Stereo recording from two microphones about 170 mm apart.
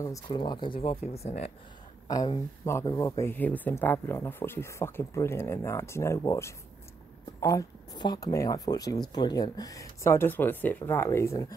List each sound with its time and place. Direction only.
0.0 s speech: 20° left (ahead or behind); by 1.5 s 40° left (ahead or behind)
2.0 s speech: 20° left (ahead or behind)